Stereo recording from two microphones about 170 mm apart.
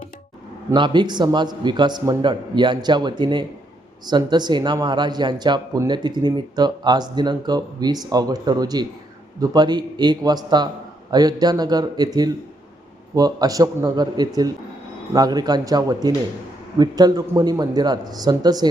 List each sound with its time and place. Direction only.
0.7 s speech: 25° right (ahead or behind)